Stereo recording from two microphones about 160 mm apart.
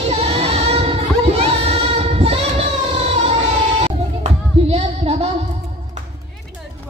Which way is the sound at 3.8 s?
40° right (ahead or behind).